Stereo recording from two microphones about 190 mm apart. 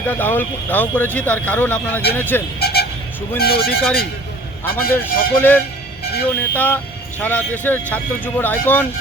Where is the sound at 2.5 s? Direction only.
55° left (ahead or behind).